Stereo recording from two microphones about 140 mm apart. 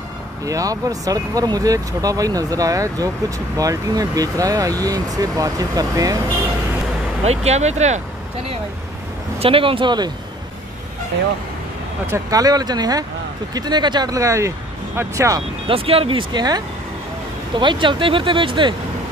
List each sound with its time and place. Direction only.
0.5 s speech: 25° right (ahead or behind)
7.2 s speech: 50° right (ahead or behind)
9.4 s speech: 40° right (ahead or behind)
12.1 s speech: 25° right (ahead or behind)
15.6 s speech: 40° right (ahead or behind)